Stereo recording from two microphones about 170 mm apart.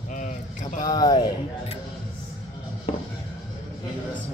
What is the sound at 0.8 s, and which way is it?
Speech, 25° left (ahead or behind).